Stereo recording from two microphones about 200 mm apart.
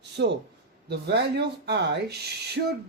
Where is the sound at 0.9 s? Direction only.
55° right (ahead or behind).